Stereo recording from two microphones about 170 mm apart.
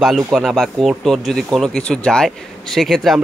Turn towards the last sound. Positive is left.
turn(degrees=0)  # may be behind; listen again after turning